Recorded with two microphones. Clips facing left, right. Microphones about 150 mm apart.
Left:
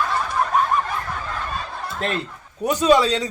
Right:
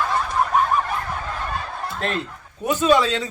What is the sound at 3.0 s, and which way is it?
Speech, 35° left (ahead or behind).